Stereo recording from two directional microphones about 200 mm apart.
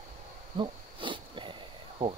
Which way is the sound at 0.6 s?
25° right (ahead or behind).